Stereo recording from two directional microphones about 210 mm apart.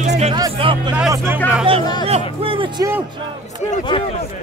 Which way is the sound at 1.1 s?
10° right (ahead or behind).